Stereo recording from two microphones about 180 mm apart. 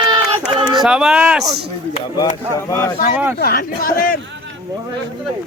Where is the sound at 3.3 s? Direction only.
55° left (ahead or behind).